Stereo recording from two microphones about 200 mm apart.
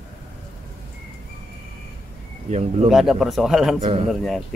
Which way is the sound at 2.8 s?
Centre (ahead or behind).